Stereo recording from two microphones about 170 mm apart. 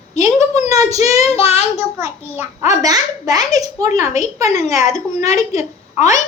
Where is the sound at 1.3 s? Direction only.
40° left (ahead or behind).